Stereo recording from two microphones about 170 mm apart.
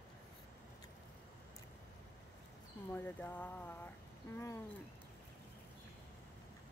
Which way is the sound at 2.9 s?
10° left (ahead or behind).